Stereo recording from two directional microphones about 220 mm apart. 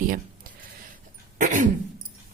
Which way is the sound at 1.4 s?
35° right (ahead or behind).